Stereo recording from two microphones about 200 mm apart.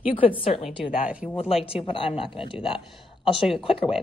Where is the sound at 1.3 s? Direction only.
30° left (ahead or behind).